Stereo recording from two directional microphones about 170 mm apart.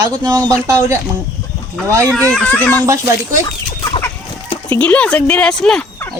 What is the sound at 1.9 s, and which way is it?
Speech, 15° right (ahead or behind).